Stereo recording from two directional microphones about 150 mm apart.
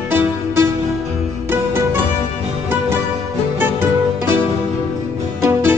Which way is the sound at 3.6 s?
15° right (ahead or behind).